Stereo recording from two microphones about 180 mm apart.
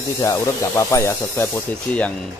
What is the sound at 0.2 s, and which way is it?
Speech, 15° left (ahead or behind).